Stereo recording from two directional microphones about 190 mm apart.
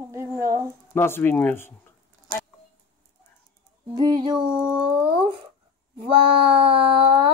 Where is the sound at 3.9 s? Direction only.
20° right (ahead or behind).